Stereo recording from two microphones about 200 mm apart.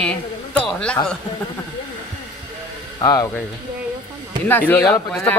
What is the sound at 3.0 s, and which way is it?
Speech, 20° left (ahead or behind).